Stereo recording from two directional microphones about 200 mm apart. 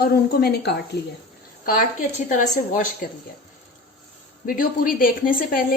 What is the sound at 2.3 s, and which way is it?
Speech, 40° left (ahead or behind).